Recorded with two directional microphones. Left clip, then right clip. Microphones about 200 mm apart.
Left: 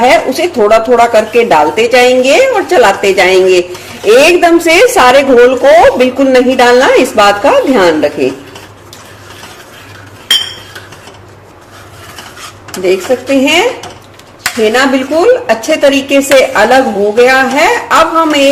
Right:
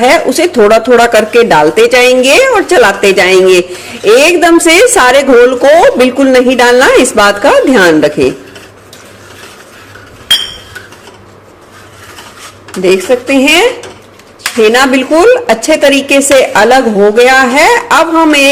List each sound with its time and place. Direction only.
0.0 s speech: 35° right (ahead or behind)
12.8 s speech: 35° right (ahead or behind)
14.7 s speech: 35° right (ahead or behind)